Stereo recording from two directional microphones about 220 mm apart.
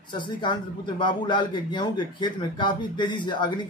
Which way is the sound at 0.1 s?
20° left (ahead or behind).